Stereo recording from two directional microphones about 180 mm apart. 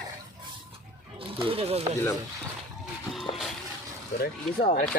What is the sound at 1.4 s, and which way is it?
Speech, 30° right (ahead or behind).